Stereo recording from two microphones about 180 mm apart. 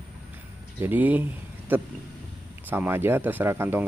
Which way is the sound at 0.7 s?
10° right (ahead or behind).